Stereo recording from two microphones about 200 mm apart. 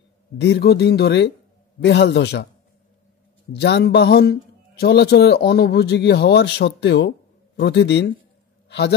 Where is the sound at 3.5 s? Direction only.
55° left (ahead or behind).